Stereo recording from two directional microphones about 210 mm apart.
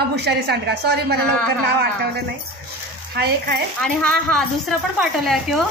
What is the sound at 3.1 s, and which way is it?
Speech, 50° right (ahead or behind).